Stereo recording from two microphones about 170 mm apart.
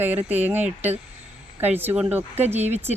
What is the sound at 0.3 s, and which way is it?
Speech, 10° right (ahead or behind).